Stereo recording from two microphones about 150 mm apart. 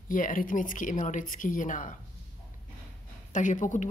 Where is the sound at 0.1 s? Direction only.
65° left (ahead or behind).